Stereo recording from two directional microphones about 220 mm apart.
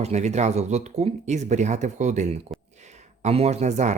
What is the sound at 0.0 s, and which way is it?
Speech, 30° right (ahead or behind).